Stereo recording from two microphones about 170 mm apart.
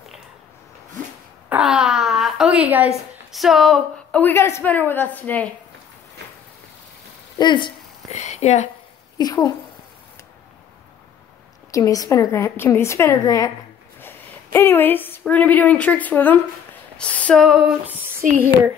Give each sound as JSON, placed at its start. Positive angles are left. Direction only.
{"t": 1.5, "sound": "a sound", "side_deg": -5}
{"t": 3.3, "sound": "speech", "side_deg": 0}
{"t": 4.2, "sound": "a woman's voice", "side_deg": 15}
{"t": 7.3, "sound": "speech", "side_deg": 25}
{"t": 8.1, "sound": "a sound", "side_deg": 40}
{"t": 9.2, "sound": "a woman's voice", "side_deg": 20}
{"t": 11.7, "sound": "a woman's voice", "side_deg": 20}
{"t": 16.9, "sound": "a sound", "side_deg": 5}
{"t": 18.2, "sound": "speech", "side_deg": -55}